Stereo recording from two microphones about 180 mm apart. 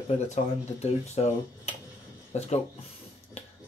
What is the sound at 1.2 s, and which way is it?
Speech, 35° left (ahead or behind).